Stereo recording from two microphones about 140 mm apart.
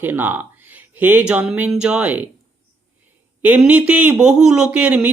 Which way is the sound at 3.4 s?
10° right (ahead or behind).